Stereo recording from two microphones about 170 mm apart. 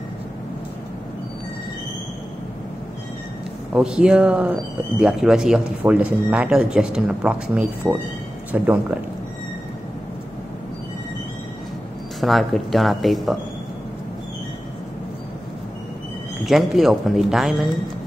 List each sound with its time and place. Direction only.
3.7 s speech: 5° right (ahead or behind)
12.2 s speech: centre (ahead or behind)
16.4 s speech: centre (ahead or behind)